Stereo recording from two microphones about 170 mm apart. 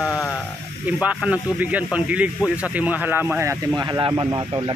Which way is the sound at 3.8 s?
25° right (ahead or behind).